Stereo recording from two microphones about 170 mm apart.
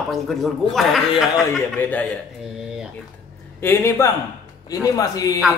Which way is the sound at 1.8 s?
10° left (ahead or behind).